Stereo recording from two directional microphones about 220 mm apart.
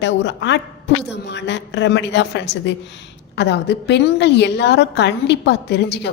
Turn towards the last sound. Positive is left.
turn(degrees=50)  # may be behind; listen again after turning